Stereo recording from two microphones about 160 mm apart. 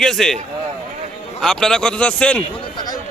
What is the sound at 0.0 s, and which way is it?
Speech, 5° left (ahead or behind).